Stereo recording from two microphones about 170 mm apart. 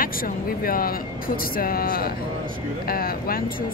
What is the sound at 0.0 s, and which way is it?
Speech, 60° left (ahead or behind).